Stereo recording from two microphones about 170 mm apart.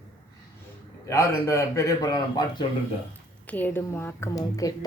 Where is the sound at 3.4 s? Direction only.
10° left (ahead or behind).